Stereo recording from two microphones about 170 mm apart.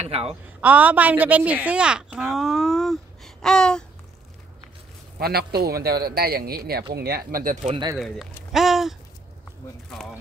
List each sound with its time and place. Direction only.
0.0 s speech: 35° right (ahead or behind)
0.6 s a woman's voice: 10° right (ahead or behind)
5.2 s speech: 65° right (ahead or behind)
8.5 s a sound: centre (ahead or behind)